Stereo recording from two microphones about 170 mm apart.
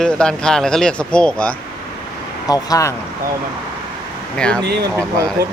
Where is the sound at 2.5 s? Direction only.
20° left (ahead or behind).